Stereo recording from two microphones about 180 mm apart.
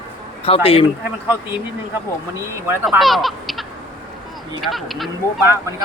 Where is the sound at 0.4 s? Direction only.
30° left (ahead or behind).